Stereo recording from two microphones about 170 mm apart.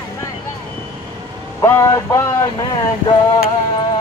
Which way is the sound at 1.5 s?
15° left (ahead or behind).